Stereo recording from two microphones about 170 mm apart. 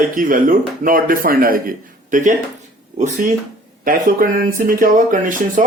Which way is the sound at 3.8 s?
55° right (ahead or behind).